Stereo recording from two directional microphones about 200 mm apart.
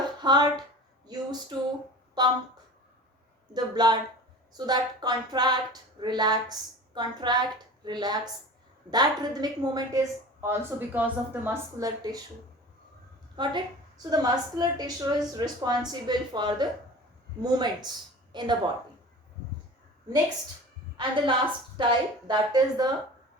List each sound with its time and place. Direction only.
0.2 s speech: 20° right (ahead or behind)
3.5 s a woman's voice: 20° right (ahead or behind)
13.3 s a woman's voice: 20° right (ahead or behind)
20.9 s a woman's voice: 25° right (ahead or behind)